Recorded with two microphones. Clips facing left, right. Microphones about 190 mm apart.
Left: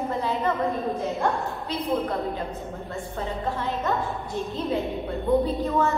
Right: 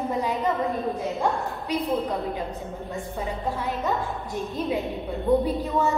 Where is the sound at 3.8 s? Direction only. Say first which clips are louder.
Even; 15° right (ahead or behind).